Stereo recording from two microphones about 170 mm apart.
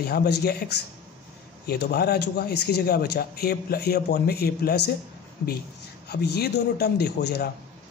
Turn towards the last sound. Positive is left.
turn(degrees=70)  # may be behind; listen again after turning